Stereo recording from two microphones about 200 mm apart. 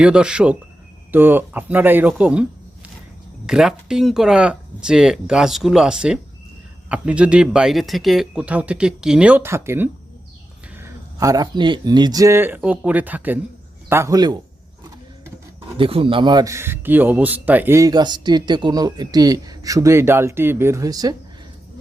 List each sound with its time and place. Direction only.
0.0 s speech: 5° right (ahead or behind)
15.8 s speech: 25° right (ahead or behind)